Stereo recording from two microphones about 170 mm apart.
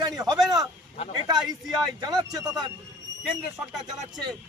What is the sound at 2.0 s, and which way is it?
Speech, 25° right (ahead or behind).